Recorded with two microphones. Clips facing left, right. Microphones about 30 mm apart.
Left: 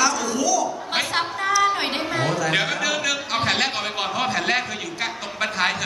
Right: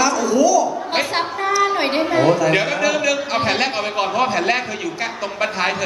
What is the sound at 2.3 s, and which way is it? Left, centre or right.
A man's voice, centre.